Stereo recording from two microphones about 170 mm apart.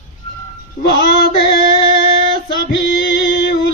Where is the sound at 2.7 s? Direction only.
90° left.